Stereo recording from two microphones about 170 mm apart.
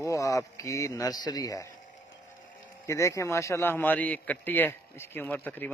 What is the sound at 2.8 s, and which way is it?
Speech, 15° left (ahead or behind).